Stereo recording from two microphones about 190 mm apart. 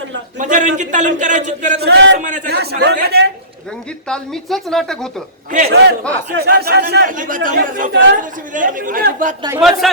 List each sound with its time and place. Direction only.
0.3 s a man's voice: 40° right (ahead or behind)
1.8 s speech: 65° right (ahead or behind)
2.1 s a man's voice: 40° right (ahead or behind)
2.5 s speech: 60° right (ahead or behind)
4.1 s a woman's voice: centre (ahead or behind)
5.5 s speech: 45° right (ahead or behind)
5.7 s speech: 60° right (ahead or behind)
7.1 s speech: 45° right (ahead or behind)
9.6 s a woman's voice: centre (ahead or behind)